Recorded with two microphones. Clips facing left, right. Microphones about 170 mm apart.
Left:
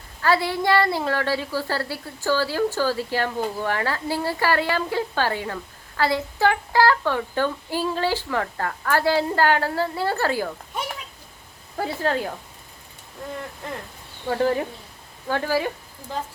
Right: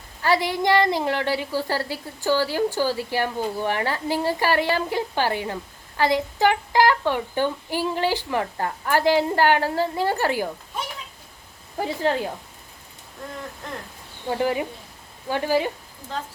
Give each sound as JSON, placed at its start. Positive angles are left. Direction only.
{"t": 0.2, "sound": "a woman's voice", "side_deg": -15}
{"t": 11.8, "sound": "speech", "side_deg": -20}
{"t": 14.3, "sound": "a woman's voice", "side_deg": -15}